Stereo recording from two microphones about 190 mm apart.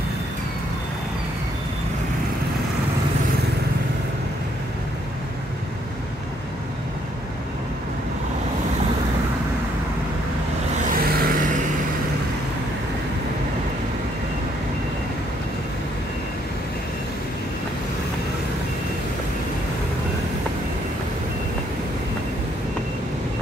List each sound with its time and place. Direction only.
10.9 s vehicle: 45° right (ahead or behind)